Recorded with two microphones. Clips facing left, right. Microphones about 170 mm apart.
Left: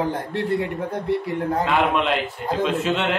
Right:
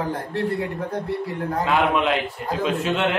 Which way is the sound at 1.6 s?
Centre (ahead or behind).